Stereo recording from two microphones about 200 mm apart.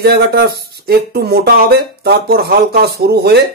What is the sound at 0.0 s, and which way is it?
Speech, 55° right (ahead or behind).